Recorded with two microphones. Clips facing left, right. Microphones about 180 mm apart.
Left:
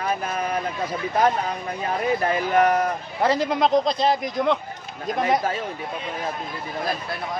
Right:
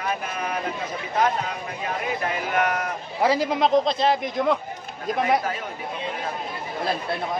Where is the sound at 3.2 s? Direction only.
5° right (ahead or behind).